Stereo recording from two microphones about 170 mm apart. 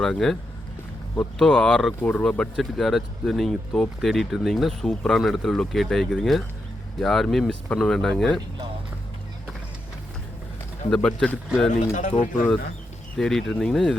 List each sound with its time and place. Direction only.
0.0 s speech: centre (ahead or behind)
10.8 s speech: 5° left (ahead or behind)
11.7 s speech: 45° left (ahead or behind)
13.1 s speech: 5° left (ahead or behind)